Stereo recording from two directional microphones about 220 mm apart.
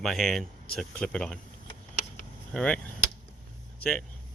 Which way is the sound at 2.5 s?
5° left (ahead or behind).